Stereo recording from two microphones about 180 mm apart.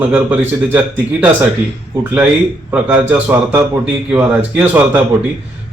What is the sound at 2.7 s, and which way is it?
Speech, 10° right (ahead or behind).